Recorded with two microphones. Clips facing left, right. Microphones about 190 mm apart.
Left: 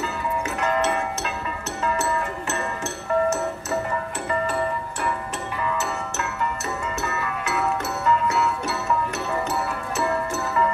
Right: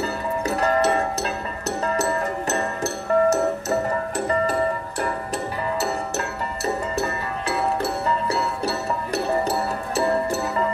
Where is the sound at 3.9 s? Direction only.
40° right (ahead or behind).